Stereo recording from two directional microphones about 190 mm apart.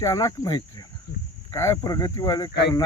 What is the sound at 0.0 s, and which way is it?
Speech, 20° left (ahead or behind).